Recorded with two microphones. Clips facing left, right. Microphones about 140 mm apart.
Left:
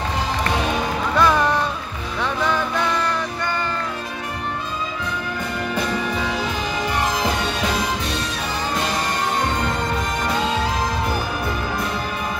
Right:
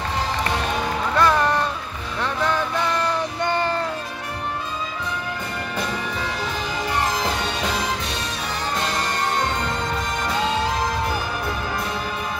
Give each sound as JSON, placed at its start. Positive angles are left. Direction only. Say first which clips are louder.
{"t": 1.1, "sound": "music", "louder": "left 1 dB", "side_deg": 0}
{"t": 3.3, "sound": "music", "louder": "right 3 dB", "side_deg": -30}